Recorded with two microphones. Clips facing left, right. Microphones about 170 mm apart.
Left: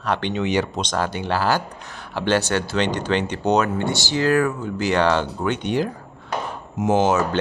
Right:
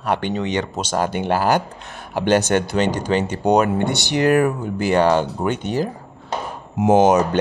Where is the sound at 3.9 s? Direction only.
65° right (ahead or behind).